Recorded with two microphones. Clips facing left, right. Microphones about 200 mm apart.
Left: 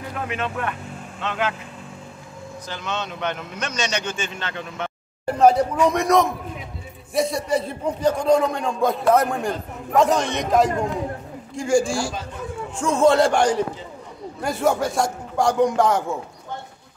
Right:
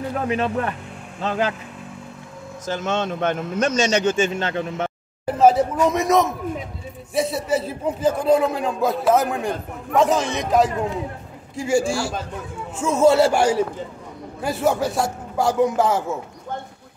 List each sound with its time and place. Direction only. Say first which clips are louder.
0.1 s speech: right 5 dB; 35° right (ahead or behind)
2.6 s a man's voice: right 7 dB; 45° right (ahead or behind)
5.2 s a man's voice: even; 5° right (ahead or behind)